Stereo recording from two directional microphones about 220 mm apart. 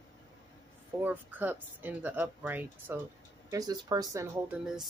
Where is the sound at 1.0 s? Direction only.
10° right (ahead or behind).